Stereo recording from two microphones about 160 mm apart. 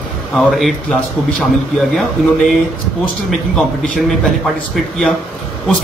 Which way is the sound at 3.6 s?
Centre (ahead or behind).